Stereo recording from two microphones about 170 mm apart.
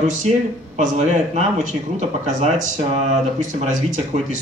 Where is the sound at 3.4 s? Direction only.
45° right (ahead or behind).